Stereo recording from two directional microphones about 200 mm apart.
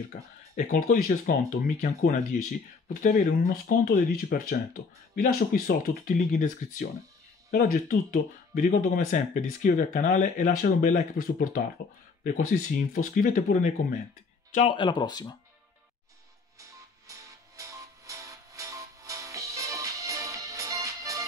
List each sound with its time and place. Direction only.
0.1 s speech: 40° left (ahead or behind); by 15.3 s 20° left (ahead or behind)
17.1 s music: 15° right (ahead or behind)